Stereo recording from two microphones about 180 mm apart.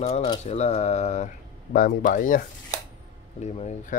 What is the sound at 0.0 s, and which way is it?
Speech, 35° left (ahead or behind).